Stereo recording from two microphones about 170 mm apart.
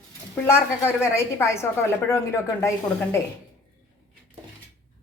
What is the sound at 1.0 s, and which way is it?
A woman's voice, 15° left (ahead or behind).